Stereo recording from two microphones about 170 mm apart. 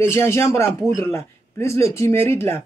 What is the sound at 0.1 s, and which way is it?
A man's voice, 15° left (ahead or behind).